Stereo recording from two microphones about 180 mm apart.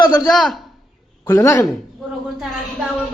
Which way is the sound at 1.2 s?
15° left (ahead or behind).